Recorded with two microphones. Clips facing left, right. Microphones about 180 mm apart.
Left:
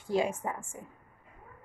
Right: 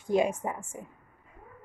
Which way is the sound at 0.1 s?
20° right (ahead or behind).